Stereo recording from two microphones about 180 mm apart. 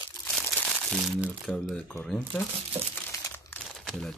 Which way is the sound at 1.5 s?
Centre (ahead or behind).